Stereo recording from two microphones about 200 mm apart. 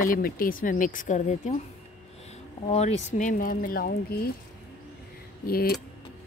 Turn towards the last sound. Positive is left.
turn(degrees=50)  # may be behind; listen again after turning